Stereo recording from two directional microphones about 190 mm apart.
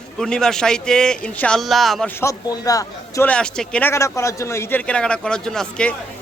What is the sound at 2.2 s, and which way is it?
A man's voice, 15° left (ahead or behind).